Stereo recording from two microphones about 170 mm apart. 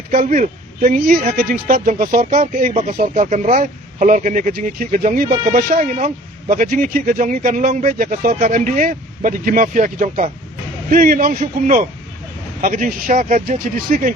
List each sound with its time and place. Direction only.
0.1 s speech: 55° right (ahead or behind)